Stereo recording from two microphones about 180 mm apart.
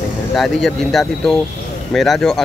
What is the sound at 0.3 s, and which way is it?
Speech, centre (ahead or behind).